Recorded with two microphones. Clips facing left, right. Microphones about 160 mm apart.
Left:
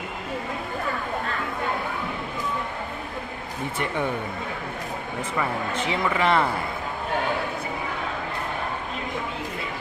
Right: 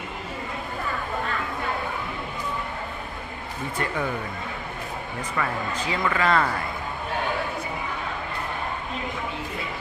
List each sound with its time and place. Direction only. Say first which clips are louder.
3.8 s speech: left 1 dB; 25° left (ahead or behind)
5.4 s speech: left 1 dB; 25° left (ahead or behind)